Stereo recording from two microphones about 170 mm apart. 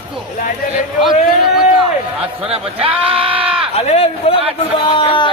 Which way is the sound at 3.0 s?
35° right (ahead or behind).